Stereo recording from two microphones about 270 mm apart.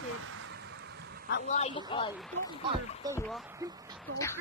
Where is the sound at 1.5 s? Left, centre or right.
Left.